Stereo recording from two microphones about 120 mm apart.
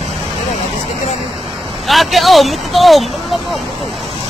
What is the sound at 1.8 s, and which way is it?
Speech, centre (ahead or behind).